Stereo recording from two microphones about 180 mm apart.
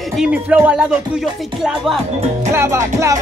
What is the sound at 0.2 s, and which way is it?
Music, 10° right (ahead or behind).